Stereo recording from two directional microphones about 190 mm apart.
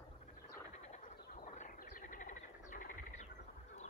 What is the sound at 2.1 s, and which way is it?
Bird, 45° left (ahead or behind).